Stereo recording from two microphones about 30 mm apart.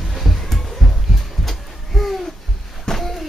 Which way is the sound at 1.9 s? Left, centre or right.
Centre.